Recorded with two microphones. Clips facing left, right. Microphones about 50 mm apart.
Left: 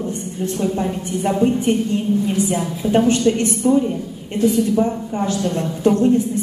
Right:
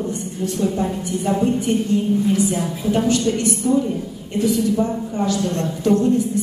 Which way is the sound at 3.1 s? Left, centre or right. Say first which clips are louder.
Left 2 dB; left.